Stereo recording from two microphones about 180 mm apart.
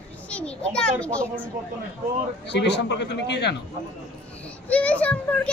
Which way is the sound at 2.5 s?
75° left (ahead or behind).